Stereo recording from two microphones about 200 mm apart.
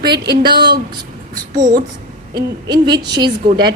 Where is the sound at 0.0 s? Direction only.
55° right (ahead or behind).